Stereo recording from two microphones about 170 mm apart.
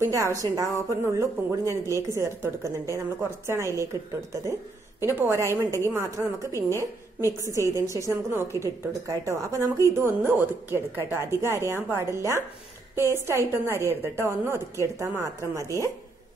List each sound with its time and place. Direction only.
0.0 s a woman's voice: 20° right (ahead or behind)
7.2 s a woman's voice: 20° left (ahead or behind)
7.7 s speech: 15° right (ahead or behind)